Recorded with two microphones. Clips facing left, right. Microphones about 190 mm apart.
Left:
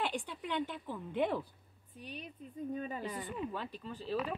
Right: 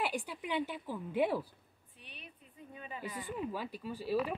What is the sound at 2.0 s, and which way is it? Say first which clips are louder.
Speech: left 9 dB; 40° left (ahead or behind).